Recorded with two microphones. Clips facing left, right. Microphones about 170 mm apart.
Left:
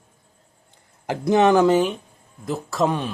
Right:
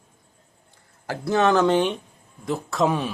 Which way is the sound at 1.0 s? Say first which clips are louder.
Left 4 dB; 20° left (ahead or behind).